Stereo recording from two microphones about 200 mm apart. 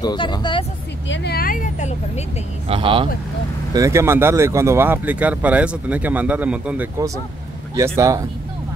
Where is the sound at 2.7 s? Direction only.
25° right (ahead or behind).